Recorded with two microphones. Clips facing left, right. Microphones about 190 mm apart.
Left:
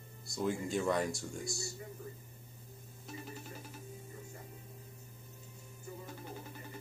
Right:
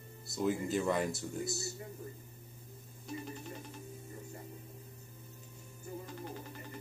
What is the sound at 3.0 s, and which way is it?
Speech, centre (ahead or behind).